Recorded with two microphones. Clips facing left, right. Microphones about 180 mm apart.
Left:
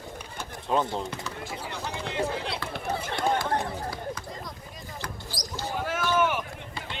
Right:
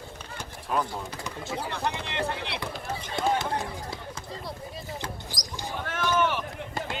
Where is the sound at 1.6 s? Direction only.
60° right (ahead or behind).